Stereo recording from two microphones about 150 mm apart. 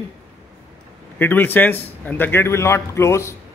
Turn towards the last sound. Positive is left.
turn(degrees=20)  # may be behind; listen again after turning